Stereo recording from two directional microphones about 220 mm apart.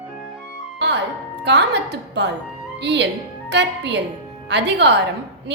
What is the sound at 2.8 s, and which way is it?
Mantra, 50° right (ahead or behind).